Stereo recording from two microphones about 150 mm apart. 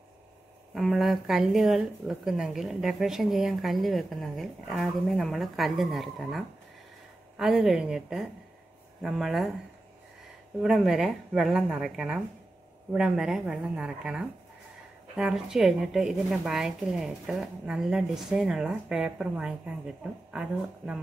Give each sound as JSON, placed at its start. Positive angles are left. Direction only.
{"t": 0.7, "sound": "speech", "side_deg": 0}
{"t": 10.6, "sound": "speech", "side_deg": -5}